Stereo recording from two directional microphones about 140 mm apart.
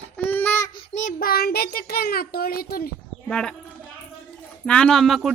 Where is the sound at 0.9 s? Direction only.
80° left.